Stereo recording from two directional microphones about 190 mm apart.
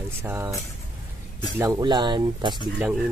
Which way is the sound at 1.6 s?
20° right (ahead or behind).